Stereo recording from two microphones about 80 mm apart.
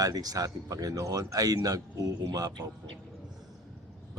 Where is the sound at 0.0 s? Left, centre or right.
Right.